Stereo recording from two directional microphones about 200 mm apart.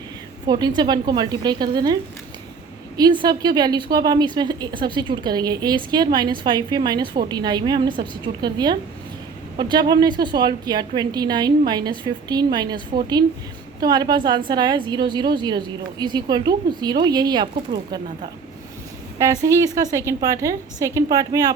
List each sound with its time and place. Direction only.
0.4 s a woman's voice: 20° right (ahead or behind)
3.0 s a woman's voice: 20° right (ahead or behind)
19.2 s a woman's voice: 15° right (ahead or behind)